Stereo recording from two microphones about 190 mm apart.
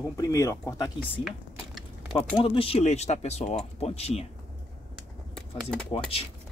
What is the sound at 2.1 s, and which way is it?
Speech, 25° left (ahead or behind).